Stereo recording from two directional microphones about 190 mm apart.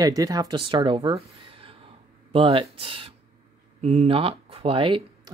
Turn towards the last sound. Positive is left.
turn(degrees=-30)  # may be behind; listen again after turning